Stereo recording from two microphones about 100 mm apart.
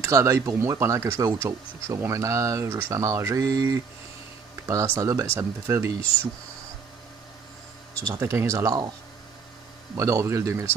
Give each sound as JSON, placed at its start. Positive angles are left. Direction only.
{"t": 0.0, "sound": "speech", "side_deg": -30}
{"t": 8.1, "sound": "speech", "side_deg": -25}
{"t": 9.9, "sound": "speech", "side_deg": -30}